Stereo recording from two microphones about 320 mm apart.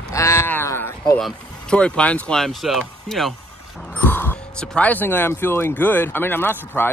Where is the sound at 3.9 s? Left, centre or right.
Centre.